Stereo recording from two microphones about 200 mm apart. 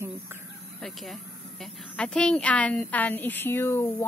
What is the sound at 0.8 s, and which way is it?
Speech, centre (ahead or behind).